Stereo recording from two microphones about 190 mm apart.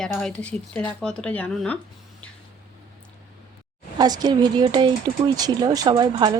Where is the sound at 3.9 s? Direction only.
20° right (ahead or behind).